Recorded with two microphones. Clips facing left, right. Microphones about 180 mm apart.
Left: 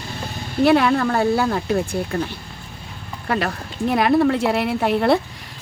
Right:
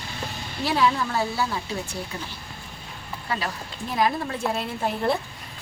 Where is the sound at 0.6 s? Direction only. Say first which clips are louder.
Left 7 dB; 60° left (ahead or behind).